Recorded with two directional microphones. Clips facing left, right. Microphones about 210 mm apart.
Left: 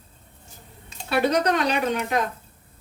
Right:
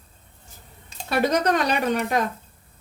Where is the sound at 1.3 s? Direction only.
45° right (ahead or behind).